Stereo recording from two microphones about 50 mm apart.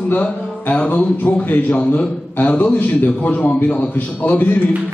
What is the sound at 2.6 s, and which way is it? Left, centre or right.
Speech, left.